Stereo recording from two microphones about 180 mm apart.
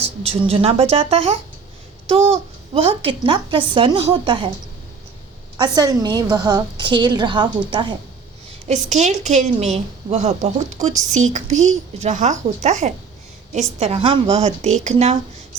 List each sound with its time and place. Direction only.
0.0 s a woman's voice: 35° right (ahead or behind)
5.5 s a woman's voice: 20° right (ahead or behind)
8.6 s a woman's voice: 40° right (ahead or behind)